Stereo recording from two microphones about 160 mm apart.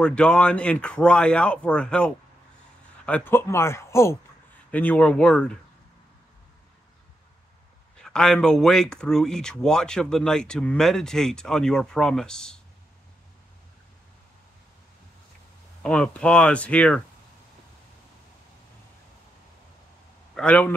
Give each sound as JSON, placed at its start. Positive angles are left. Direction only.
{"t": 0.0, "sound": "speech", "side_deg": 5}
{"t": 8.0, "sound": "speech", "side_deg": 5}
{"t": 15.8, "sound": "speech", "side_deg": 5}
{"t": 20.3, "sound": "a man's voice", "side_deg": 10}